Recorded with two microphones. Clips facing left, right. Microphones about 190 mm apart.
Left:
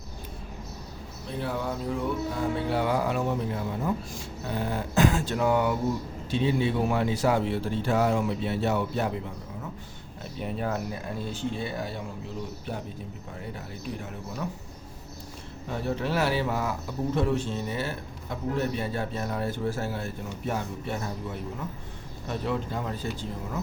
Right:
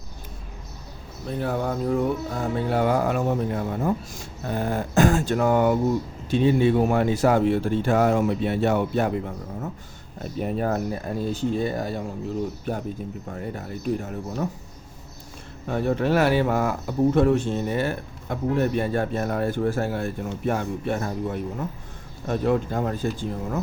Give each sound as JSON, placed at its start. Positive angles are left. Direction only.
{"t": 1.4, "sound": "speech", "side_deg": -50}
{"t": 15.7, "sound": "speech", "side_deg": -55}